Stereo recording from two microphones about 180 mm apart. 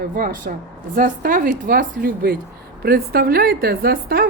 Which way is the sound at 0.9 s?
50° right (ahead or behind).